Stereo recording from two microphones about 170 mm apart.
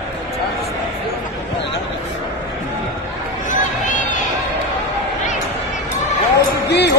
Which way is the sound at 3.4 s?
50° left (ahead or behind).